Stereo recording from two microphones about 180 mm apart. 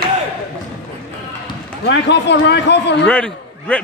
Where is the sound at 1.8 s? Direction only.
75° left (ahead or behind).